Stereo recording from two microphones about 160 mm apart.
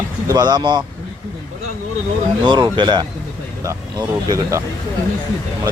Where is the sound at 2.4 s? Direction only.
30° right (ahead or behind).